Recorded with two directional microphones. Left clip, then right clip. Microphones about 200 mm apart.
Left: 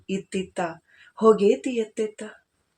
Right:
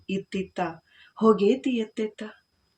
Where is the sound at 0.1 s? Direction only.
15° right (ahead or behind).